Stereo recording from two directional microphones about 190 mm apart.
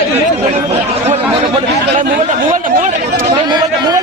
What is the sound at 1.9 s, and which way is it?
Speech, 40° right (ahead or behind).